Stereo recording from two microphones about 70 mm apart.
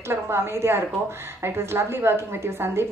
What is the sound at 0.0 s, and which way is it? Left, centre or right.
A woman's voice, right.